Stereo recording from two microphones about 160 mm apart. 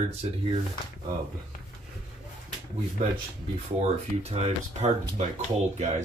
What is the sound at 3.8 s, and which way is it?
Speech, 40° right (ahead or behind).